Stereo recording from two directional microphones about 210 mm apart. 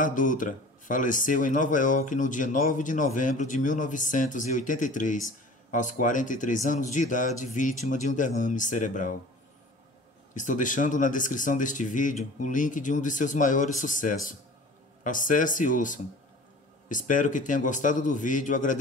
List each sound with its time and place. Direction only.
0.0 s speech: 40° left (ahead or behind)
10.3 s speech: 35° left (ahead or behind)